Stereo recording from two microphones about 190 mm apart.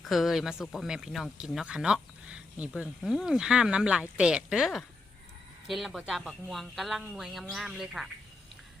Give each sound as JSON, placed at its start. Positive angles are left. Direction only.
{"t": 0.0, "sound": "speech", "side_deg": 0}